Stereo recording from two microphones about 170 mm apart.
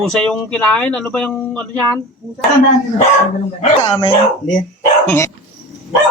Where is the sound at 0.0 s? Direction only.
5° left (ahead or behind).